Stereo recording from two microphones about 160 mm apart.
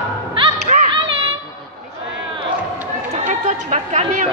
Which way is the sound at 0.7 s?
40° right (ahead or behind).